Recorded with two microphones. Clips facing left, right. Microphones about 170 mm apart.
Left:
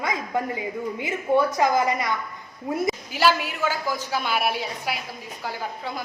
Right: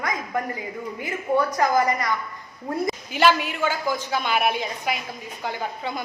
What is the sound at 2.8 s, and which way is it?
A woman's voice, 5° left (ahead or behind).